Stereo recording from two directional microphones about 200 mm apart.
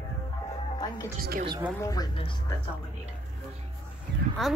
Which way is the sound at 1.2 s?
50° right (ahead or behind).